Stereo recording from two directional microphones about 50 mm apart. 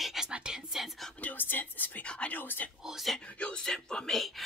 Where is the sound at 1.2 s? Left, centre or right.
Left.